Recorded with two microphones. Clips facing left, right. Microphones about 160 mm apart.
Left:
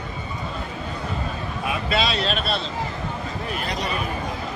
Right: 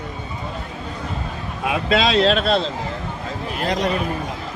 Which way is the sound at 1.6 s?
90° right.